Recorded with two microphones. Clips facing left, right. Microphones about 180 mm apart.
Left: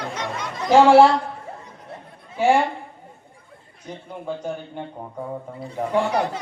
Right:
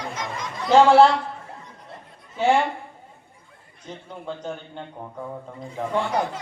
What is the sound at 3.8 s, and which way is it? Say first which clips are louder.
Speech: left 3 dB; 10° left (ahead or behind).